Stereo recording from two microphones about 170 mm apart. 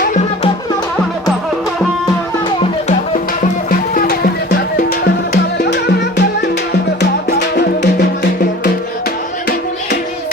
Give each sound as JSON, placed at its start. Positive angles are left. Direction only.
{"t": 4.0, "sound": "music", "side_deg": 60}